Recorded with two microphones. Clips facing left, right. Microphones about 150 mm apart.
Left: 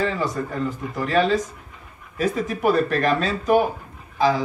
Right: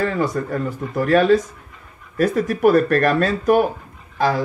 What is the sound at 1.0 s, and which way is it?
Speech, 55° right (ahead or behind).